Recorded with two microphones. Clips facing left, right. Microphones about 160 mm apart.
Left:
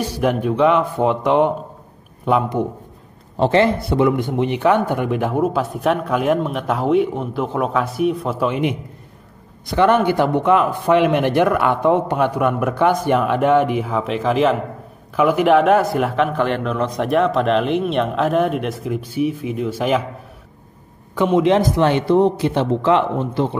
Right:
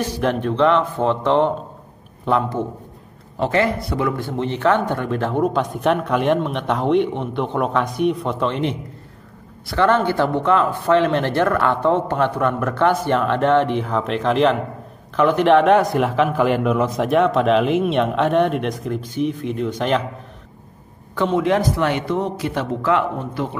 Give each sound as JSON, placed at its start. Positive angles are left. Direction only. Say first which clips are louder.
{"t": 0.0, "sound": "speech", "louder": "left 2 dB", "side_deg": 10}
{"t": 3.3, "sound": "speech", "louder": "left 4 dB", "side_deg": 30}
{"t": 21.1, "sound": "a man's voice", "louder": "left 3 dB", "side_deg": 15}